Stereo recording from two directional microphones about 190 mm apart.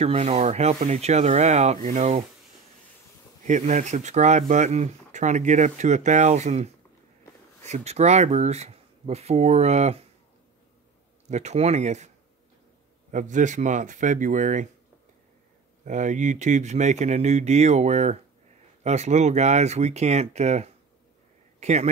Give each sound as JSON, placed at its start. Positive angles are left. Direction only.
{"t": 0.0, "sound": "speech", "side_deg": -35}
{"t": 3.4, "sound": "speech", "side_deg": -40}
{"t": 11.2, "sound": "speech", "side_deg": -35}
{"t": 13.1, "sound": "speech", "side_deg": -40}
{"t": 15.8, "sound": "speech", "side_deg": -40}